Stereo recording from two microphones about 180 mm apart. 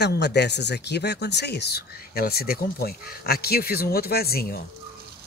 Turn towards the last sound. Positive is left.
turn(degrees=55)  # may be behind; listen again after turning